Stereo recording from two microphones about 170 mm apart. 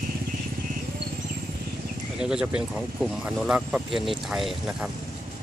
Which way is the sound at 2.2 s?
5° right (ahead or behind).